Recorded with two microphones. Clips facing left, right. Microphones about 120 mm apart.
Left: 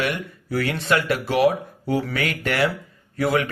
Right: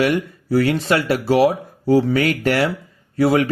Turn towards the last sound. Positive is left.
turn(degrees=-35)  # may be behind; listen again after turning